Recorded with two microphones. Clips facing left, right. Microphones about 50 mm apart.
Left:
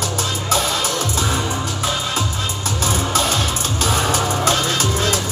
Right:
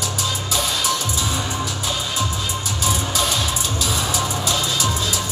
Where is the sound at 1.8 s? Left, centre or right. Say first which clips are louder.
Left 3 dB; left.